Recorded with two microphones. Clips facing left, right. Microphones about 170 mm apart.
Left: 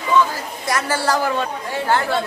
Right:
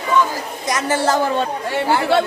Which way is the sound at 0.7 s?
20° right (ahead or behind).